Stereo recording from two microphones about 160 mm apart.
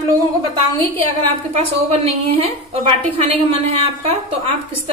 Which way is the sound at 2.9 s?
35° right (ahead or behind).